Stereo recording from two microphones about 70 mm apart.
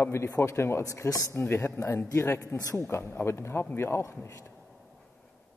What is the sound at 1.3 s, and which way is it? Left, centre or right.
Speech, left.